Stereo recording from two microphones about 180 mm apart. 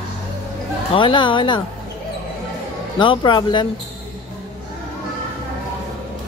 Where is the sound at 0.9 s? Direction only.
25° left (ahead or behind).